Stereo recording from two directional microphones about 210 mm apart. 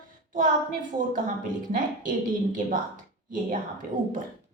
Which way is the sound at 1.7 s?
40° right (ahead or behind).